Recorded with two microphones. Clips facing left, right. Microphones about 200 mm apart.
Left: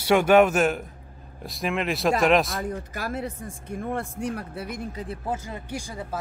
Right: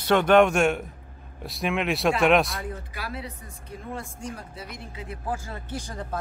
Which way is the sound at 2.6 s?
45° left (ahead or behind).